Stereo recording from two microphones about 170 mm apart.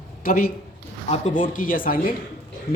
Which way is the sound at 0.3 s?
60° left (ahead or behind).